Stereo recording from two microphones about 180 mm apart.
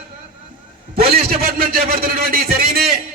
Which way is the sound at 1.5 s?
55° right (ahead or behind).